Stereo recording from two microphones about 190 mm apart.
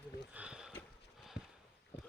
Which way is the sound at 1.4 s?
65° left (ahead or behind).